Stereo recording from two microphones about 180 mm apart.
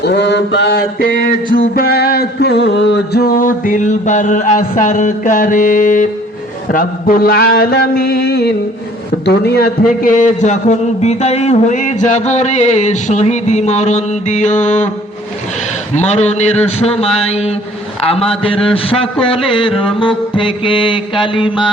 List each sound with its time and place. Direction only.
0.0 s mantra: 75° left (ahead or behind)
9.2 s a man's voice: 65° left (ahead or behind); by 14.8 s 40° left (ahead or behind)
16.0 s a man's voice: 40° left (ahead or behind)
19.2 s music: 30° left (ahead or behind)